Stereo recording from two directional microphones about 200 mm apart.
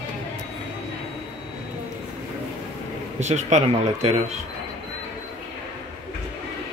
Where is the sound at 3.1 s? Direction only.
35° right (ahead or behind).